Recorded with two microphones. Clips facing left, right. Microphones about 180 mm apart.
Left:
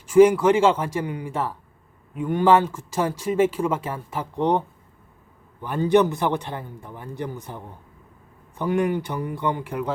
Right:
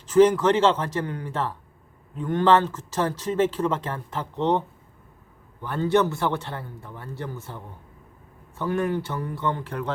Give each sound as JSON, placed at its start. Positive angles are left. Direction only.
{"t": 0.0, "sound": "speech", "side_deg": 10}